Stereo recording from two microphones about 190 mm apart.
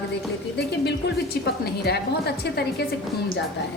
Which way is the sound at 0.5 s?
60° left (ahead or behind).